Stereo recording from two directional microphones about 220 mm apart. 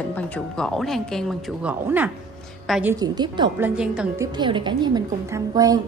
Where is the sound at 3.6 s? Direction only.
5° right (ahead or behind).